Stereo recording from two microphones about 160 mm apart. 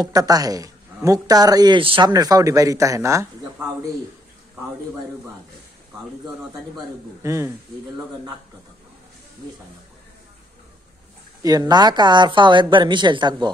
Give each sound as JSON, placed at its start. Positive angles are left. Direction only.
{"t": 0.0, "sound": "speech", "side_deg": -25}
{"t": 7.2, "sound": "speech", "side_deg": -20}
{"t": 11.4, "sound": "speech", "side_deg": -25}